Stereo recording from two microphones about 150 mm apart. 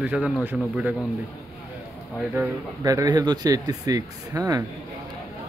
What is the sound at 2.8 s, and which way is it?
Speech, 25° right (ahead or behind).